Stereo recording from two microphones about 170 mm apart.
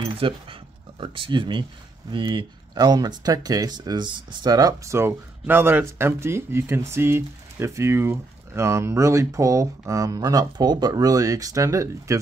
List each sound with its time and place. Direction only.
0.2 s speech: 30° right (ahead or behind)